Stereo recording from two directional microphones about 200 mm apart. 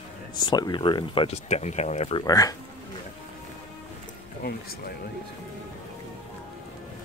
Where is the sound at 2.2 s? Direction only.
15° left (ahead or behind).